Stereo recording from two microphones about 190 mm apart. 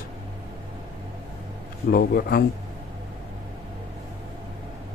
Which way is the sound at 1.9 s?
50° left (ahead or behind).